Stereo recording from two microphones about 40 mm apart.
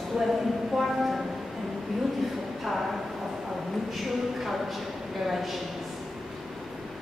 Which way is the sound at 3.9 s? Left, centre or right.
Centre.